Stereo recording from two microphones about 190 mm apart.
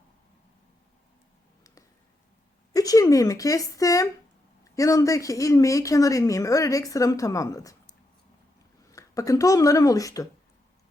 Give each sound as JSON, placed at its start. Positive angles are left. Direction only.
{"t": 2.7, "sound": "speech", "side_deg": 20}
{"t": 8.9, "sound": "speech", "side_deg": 15}